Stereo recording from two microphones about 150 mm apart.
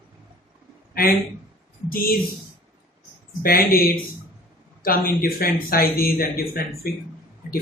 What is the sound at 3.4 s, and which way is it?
A man's voice, 80° left.